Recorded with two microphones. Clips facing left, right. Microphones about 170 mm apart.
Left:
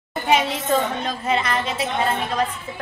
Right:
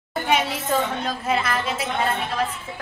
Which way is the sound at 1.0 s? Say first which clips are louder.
Left 1 dB; 5° right (ahead or behind).